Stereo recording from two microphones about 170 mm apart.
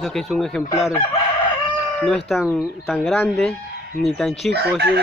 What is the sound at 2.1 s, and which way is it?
Speech, centre (ahead or behind).